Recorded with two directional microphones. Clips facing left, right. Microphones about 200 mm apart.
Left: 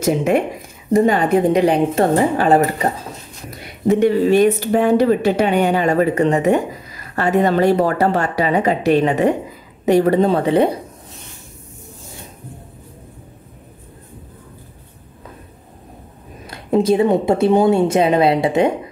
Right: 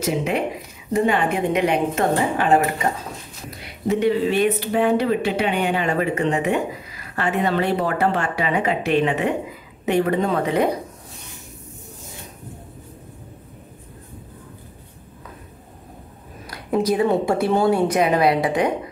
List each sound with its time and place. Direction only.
0.0 s speech: 45° left (ahead or behind)
3.8 s speech: 50° left (ahead or behind); by 10.8 s 30° left (ahead or behind)
16.4 s a woman's voice: 25° left (ahead or behind)